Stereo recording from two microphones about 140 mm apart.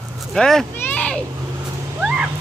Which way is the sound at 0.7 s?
10° left (ahead or behind).